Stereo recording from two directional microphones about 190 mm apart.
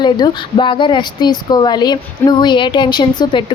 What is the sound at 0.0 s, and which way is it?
Speech, 25° left (ahead or behind).